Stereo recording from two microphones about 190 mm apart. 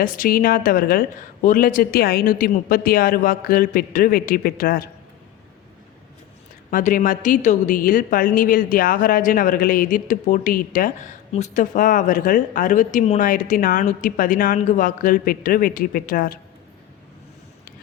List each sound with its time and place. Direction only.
0.0 s speech: 50° left (ahead or behind)
6.7 s speech: 45° left (ahead or behind)
11.3 s speech: 35° left (ahead or behind)